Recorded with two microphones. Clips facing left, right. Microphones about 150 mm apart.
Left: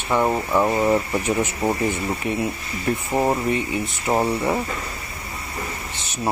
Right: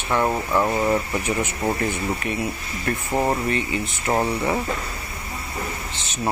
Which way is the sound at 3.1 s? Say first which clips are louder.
Left 1 dB; 5° left (ahead or behind).